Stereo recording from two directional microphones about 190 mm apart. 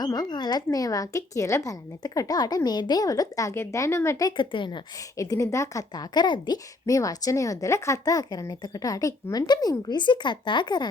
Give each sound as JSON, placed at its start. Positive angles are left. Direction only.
{"t": 0.0, "sound": "speech", "side_deg": 20}